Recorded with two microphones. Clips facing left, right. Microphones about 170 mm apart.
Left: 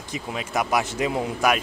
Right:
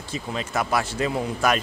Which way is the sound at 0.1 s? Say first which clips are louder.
Even; 10° left (ahead or behind).